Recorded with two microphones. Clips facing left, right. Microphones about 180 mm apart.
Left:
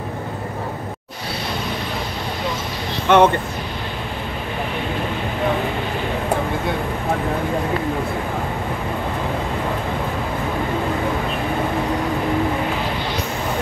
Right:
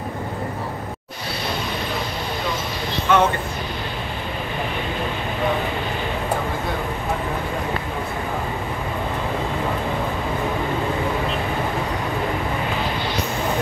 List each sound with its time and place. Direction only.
3.1 s speech: 55° left (ahead or behind)